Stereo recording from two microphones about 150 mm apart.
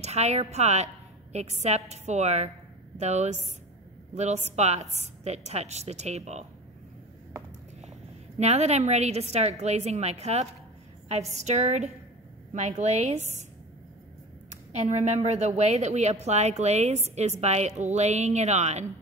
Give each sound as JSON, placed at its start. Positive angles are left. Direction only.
{"t": 0.0, "sound": "a woman's voice", "side_deg": -45}
{"t": 8.4, "sound": "a woman's voice", "side_deg": -45}
{"t": 14.5, "sound": "a woman's voice", "side_deg": -50}